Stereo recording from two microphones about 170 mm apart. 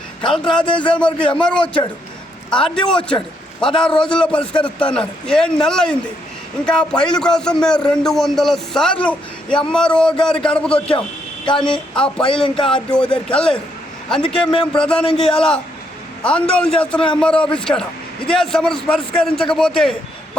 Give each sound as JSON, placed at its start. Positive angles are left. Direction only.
{"t": 0.3, "sound": "a man's voice", "side_deg": 5}
{"t": 1.6, "sound": "speech", "side_deg": 30}
{"t": 2.5, "sound": "a man's voice", "side_deg": 5}
{"t": 12.2, "sound": "speech", "side_deg": 30}
{"t": 12.6, "sound": "a man's voice", "side_deg": 5}